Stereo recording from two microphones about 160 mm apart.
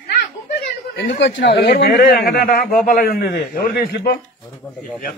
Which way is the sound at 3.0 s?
70° left (ahead or behind).